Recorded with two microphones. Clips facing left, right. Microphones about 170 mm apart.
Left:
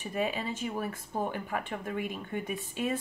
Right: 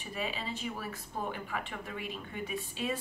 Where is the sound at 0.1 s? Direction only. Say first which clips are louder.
Left 5 dB; 50° left (ahead or behind).